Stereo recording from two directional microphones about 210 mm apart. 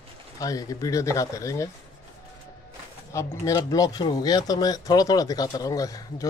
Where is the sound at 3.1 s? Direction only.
15° left (ahead or behind).